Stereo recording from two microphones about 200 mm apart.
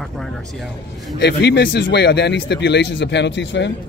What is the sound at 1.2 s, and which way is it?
Speech, 60° left (ahead or behind).